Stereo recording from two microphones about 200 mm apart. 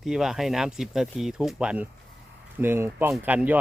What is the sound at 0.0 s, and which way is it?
Speech, centre (ahead or behind).